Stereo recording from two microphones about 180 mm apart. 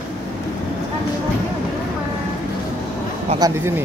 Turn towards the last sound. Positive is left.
turn(degrees=-15)  # may be behind; listen again after turning